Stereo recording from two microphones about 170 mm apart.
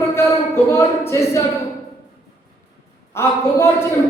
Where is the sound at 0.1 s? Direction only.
15° left (ahead or behind).